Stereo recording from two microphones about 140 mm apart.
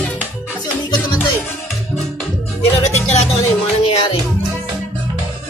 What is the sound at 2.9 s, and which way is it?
Music, 50° left (ahead or behind).